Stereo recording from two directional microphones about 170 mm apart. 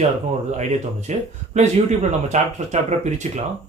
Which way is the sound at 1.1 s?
45° right (ahead or behind).